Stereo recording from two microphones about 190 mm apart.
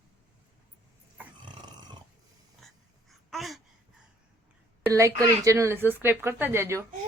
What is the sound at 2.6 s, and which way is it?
Dog, centre (ahead or behind).